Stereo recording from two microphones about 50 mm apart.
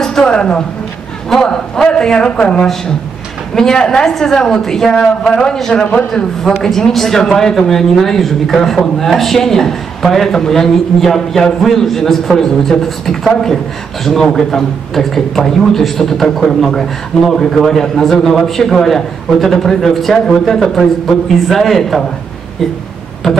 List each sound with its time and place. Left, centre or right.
0.0 s a woman's voice: centre